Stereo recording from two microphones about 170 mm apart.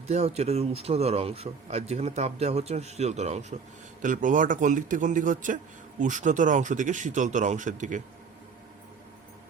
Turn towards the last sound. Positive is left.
turn(degrees=-50)  # may be behind; listen again after turning